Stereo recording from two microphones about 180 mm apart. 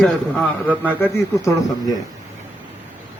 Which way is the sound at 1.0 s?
15° left (ahead or behind).